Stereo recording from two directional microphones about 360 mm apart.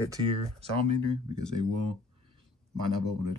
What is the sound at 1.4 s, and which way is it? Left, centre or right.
Speech, right.